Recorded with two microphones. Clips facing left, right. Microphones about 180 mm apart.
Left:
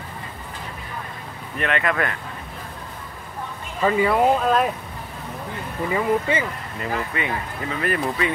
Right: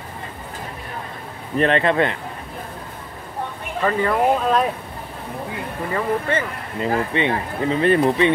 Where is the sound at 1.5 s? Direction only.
30° right (ahead or behind).